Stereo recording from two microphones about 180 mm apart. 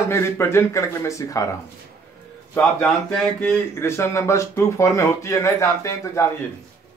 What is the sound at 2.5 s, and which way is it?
Speech, 5° left (ahead or behind).